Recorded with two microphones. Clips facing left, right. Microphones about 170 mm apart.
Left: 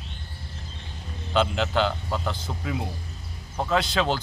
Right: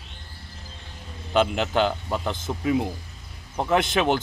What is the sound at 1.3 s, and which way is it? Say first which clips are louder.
Speech: right 2 dB; 15° right (ahead or behind).